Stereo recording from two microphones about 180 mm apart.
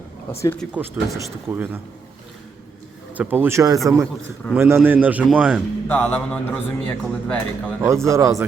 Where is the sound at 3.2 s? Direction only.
10° right (ahead or behind).